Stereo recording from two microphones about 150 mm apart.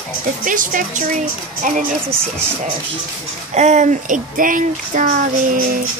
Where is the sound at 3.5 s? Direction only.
50° right (ahead or behind).